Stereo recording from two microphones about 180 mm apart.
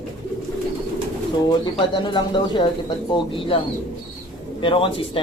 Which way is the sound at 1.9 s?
25° left (ahead or behind).